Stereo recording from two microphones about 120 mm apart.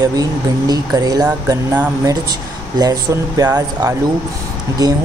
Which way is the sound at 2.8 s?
30° right (ahead or behind).